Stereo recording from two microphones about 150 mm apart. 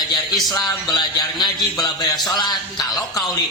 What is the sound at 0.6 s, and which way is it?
Speech, 30° left (ahead or behind).